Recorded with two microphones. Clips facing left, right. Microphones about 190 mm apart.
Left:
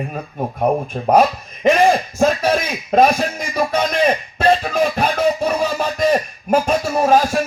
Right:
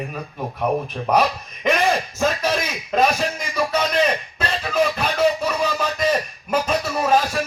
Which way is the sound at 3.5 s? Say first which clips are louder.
Left 2 dB; 50° left (ahead or behind).